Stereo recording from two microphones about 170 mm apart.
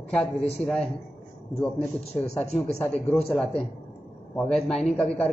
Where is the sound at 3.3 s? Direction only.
5° left (ahead or behind).